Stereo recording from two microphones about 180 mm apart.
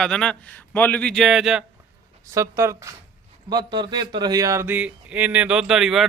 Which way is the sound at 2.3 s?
15° right (ahead or behind).